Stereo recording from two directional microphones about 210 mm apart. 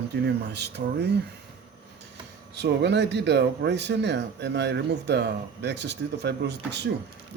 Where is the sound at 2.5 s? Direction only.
55° right (ahead or behind).